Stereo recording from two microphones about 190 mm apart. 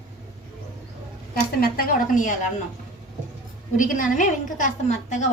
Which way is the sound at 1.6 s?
45° left (ahead or behind).